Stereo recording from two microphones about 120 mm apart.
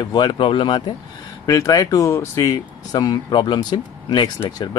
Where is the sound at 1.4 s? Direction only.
30° left (ahead or behind).